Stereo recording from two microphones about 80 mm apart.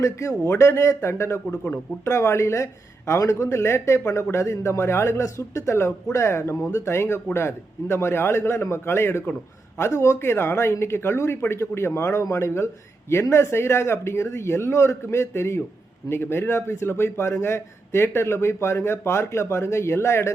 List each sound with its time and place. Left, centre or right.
0.0 s a man's voice: left